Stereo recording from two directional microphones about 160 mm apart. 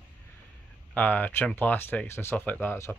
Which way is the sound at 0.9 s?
10° left (ahead or behind).